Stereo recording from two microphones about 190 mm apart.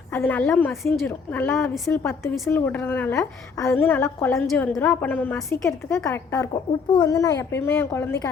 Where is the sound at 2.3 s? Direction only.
Centre (ahead or behind).